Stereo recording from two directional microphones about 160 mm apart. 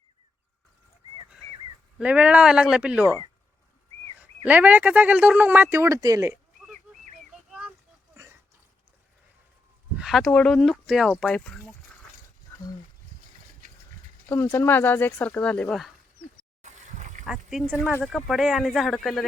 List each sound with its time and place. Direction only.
2.0 s speech: 10° right (ahead or behind)
4.2 s speech: 10° right (ahead or behind)
10.0 s speech: centre (ahead or behind)
12.5 s wild animals: 15° left (ahead or behind)
14.3 s speech: 15° left (ahead or behind)
16.6 s a sound: 50° right (ahead or behind)
17.2 s speech: 5° right (ahead or behind)